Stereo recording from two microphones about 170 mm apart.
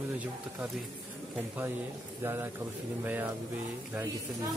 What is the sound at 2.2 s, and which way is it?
Speech, 15° right (ahead or behind).